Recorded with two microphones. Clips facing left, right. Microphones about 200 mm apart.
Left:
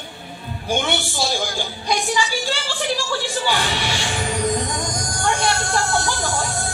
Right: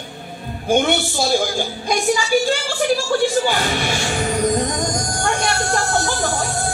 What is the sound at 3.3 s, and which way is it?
Music, 45° right (ahead or behind).